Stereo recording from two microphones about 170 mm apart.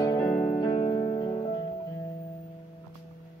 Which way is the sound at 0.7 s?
40° left (ahead or behind).